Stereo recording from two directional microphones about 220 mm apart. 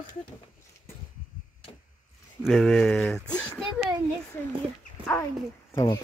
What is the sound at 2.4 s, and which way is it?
Speech, centre (ahead or behind).